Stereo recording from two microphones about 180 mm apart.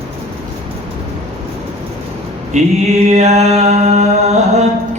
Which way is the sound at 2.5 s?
40° right (ahead or behind).